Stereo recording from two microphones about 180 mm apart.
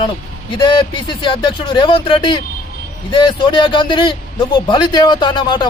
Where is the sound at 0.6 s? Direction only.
25° left (ahead or behind).